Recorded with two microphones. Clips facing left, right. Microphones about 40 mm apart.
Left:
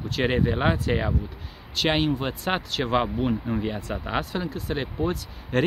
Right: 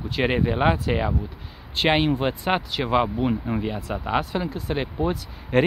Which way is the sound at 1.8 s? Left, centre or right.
Right.